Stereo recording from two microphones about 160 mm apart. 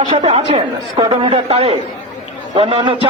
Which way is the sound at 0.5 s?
30° right (ahead or behind).